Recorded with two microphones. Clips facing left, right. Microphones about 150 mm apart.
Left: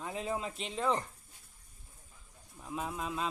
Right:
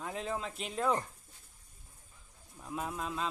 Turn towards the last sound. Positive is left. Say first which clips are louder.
# even
turn(degrees=5)  # may be behind; listen again after turning